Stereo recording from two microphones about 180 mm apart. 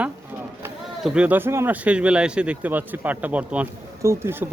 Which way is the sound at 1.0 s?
5° right (ahead or behind).